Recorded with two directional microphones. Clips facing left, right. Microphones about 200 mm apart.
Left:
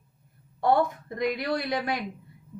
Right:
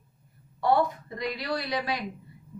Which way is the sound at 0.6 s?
50° left (ahead or behind).